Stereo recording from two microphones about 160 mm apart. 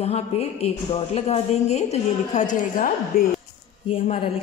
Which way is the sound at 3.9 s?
40° left (ahead or behind).